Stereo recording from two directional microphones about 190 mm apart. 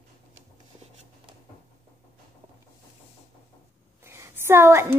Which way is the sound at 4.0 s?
15° right (ahead or behind).